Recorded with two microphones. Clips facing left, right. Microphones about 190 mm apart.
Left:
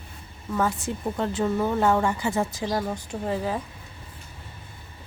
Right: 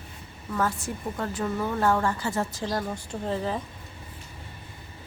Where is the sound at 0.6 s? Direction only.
15° left (ahead or behind).